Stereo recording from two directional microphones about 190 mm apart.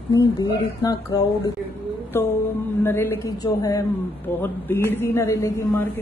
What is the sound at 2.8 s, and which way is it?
A woman's voice, 10° left (ahead or behind).